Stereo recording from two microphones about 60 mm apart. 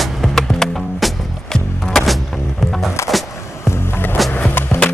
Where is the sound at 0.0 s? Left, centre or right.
Centre.